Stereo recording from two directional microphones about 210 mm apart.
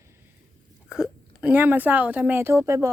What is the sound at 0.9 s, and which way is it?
A woman's voice, 5° right (ahead or behind).